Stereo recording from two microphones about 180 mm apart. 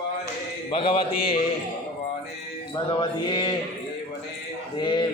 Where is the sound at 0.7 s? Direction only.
30° left (ahead or behind).